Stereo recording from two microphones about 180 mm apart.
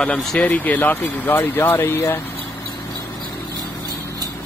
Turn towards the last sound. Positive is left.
turn(degrees=20)  # may be behind; listen again after turning